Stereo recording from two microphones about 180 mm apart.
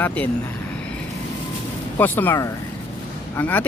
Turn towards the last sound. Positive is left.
turn(degrees=10)  # may be behind; listen again after turning